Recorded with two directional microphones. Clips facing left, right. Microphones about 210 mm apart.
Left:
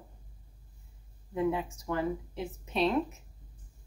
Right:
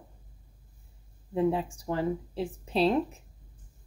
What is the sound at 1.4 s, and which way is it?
Speech, 30° right (ahead or behind).